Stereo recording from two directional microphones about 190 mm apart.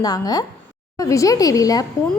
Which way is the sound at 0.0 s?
20° left (ahead or behind).